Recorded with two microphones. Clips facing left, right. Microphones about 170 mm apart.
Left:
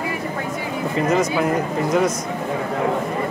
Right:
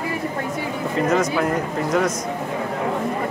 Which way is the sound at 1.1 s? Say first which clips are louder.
Left 2 dB; 5° left (ahead or behind).